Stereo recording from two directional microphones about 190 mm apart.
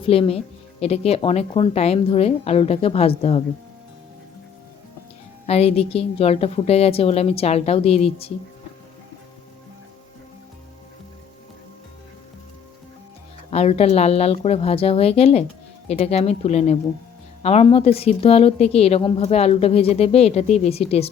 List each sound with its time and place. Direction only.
0.0 s a woman's voice: 30° left (ahead or behind)
5.5 s a woman's voice: 30° left (ahead or behind)
13.5 s a woman's voice: 35° left (ahead or behind)